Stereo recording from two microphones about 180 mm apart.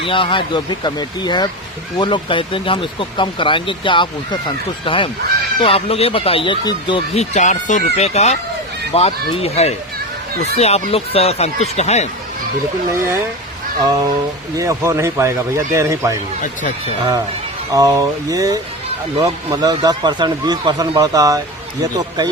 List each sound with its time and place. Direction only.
0.0 s speech: 30° left (ahead or behind)
14.5 s speech: 15° right (ahead or behind)
17.7 s speech: 20° right (ahead or behind)